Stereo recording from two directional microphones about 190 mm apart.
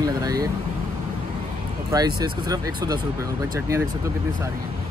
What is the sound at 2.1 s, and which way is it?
Speech, 20° right (ahead or behind).